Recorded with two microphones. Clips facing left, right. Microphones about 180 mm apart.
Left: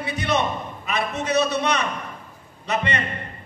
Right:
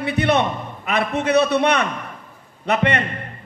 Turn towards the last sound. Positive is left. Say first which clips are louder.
# right 5 dB
turn(degrees=-60)  # may be behind; listen again after turning